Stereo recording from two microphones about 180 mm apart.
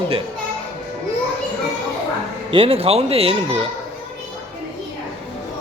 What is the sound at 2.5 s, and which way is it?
Speech, 30° right (ahead or behind).